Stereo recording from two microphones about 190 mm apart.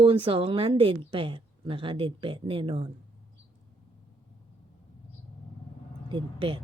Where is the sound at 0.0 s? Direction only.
30° right (ahead or behind).